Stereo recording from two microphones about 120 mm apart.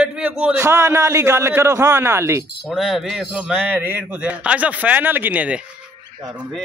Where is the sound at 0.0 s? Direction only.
10° right (ahead or behind).